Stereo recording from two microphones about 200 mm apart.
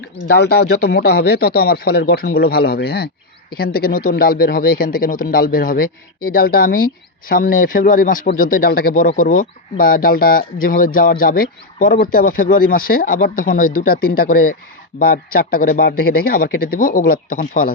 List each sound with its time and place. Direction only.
0.3 s speech: 55° left (ahead or behind)